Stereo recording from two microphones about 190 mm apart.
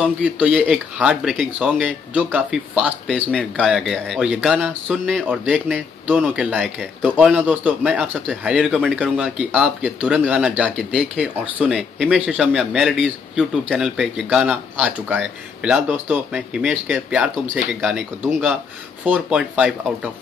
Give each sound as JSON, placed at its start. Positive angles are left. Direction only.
{"t": 0.0, "sound": "speech", "side_deg": -5}